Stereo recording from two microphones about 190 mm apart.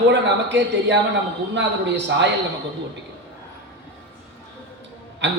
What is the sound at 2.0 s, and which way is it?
Speech, 65° right (ahead or behind).